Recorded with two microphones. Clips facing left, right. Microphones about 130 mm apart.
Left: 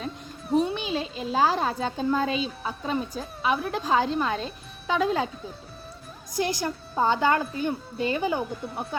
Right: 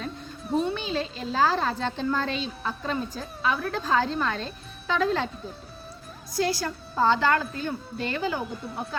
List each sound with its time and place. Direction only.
0.0 s a sound: 5° left (ahead or behind)
0.7 s a woman's voice: 15° left (ahead or behind)
6.3 s a woman's voice: 20° left (ahead or behind)